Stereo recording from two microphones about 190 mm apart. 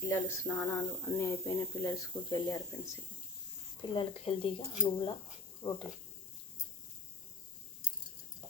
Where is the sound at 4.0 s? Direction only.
30° left (ahead or behind).